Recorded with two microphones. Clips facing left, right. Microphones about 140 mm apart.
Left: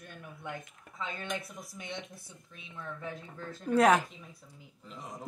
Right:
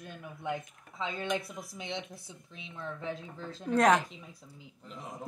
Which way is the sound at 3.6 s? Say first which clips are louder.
Left 1 dB; 5° left (ahead or behind).